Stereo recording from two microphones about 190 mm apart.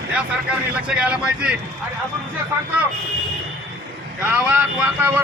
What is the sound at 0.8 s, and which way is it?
Speech, 5° right (ahead or behind).